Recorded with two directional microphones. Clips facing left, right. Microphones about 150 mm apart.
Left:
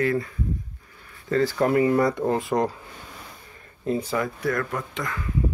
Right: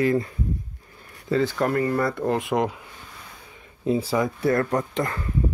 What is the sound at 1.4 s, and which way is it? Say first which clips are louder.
Speech: left 5 dB; 5° left (ahead or behind).